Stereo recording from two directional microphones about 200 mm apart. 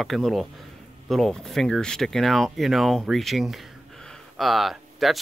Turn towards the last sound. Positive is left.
turn(degrees=0)  # may be behind; listen again after turning